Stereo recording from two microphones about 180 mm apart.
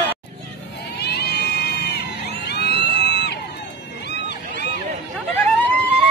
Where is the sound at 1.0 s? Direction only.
65° left (ahead or behind).